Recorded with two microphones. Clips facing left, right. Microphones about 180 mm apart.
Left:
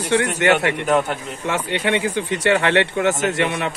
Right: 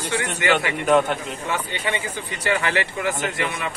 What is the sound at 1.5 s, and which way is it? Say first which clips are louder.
Speech: left 6 dB; 75° left (ahead or behind).